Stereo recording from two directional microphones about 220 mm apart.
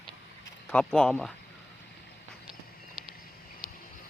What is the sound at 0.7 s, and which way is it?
Speech, 5° left (ahead or behind).